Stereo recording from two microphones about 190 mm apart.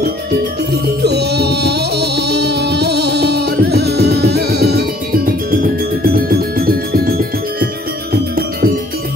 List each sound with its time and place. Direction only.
1.0 s music: 60° right (ahead or behind)